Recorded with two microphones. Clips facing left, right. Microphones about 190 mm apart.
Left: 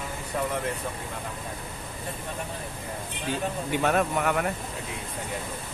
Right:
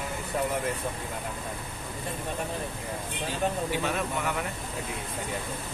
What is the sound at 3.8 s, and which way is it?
Speech, 60° left (ahead or behind).